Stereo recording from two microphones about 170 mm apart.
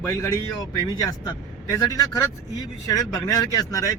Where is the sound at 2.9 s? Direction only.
20° left (ahead or behind).